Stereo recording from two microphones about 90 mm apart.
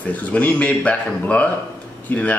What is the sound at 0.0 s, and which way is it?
Speech, 15° left (ahead or behind).